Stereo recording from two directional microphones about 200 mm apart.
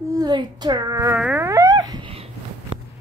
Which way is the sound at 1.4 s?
15° right (ahead or behind).